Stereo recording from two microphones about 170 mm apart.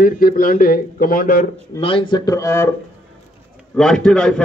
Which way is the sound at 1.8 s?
30° left (ahead or behind).